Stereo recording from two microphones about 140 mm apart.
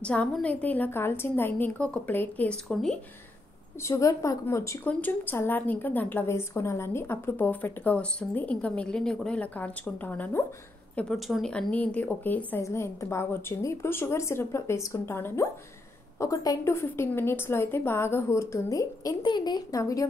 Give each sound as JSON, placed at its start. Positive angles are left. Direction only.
{"t": 0.0, "sound": "a woman's voice", "side_deg": 10}
{"t": 3.8, "sound": "a woman's voice", "side_deg": 20}
{"t": 11.0, "sound": "a woman's voice", "side_deg": 0}